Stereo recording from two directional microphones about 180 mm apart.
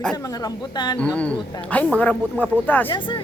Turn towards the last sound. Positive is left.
turn(degrees=25)  # may be behind; listen again after turning